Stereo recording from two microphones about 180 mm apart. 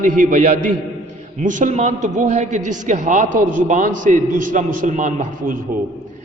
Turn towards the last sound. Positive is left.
turn(degrees=-50)  # may be behind; listen again after turning